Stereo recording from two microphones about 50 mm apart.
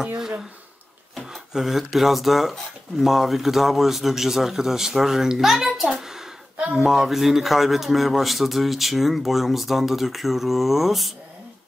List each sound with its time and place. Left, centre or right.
1.5 s a man's voice: centre
6.5 s a sound: right
6.8 s a man's voice: centre